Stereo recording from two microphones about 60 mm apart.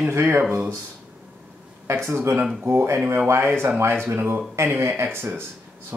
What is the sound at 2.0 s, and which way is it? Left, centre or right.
Speech, right.